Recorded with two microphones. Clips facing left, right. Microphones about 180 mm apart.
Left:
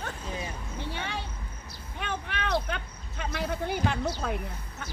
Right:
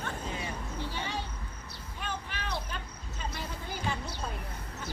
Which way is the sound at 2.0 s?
65° left (ahead or behind).